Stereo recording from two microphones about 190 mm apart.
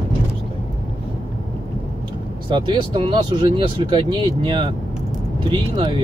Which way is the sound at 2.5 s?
25° right (ahead or behind).